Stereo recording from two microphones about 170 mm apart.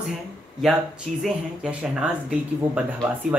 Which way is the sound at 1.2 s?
5° right (ahead or behind).